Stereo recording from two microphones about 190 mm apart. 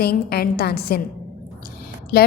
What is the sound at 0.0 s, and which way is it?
A woman's voice, 55° left (ahead or behind).